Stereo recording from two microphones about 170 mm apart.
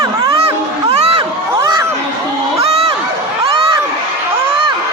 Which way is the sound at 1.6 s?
20° right (ahead or behind).